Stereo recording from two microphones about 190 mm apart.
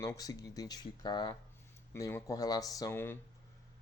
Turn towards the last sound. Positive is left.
turn(degrees=10)  # may be behind; listen again after turning